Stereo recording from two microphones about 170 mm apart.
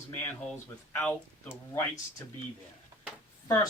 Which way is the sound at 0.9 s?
10° left (ahead or behind).